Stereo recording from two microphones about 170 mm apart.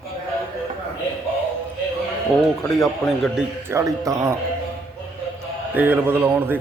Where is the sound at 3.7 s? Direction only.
20° right (ahead or behind).